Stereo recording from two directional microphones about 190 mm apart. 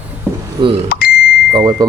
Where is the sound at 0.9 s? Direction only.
50° left (ahead or behind).